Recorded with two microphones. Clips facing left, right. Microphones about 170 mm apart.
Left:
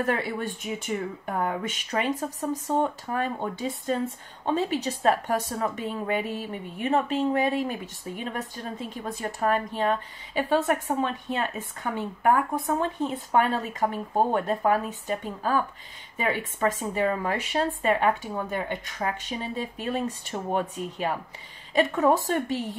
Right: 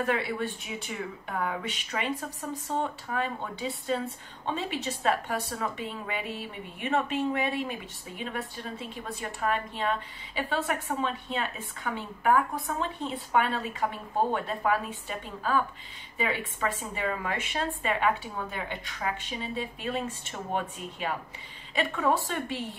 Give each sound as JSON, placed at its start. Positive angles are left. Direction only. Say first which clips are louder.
{"t": 0.0, "sound": "a woman's voice", "louder": "left 2 dB", "side_deg": 40}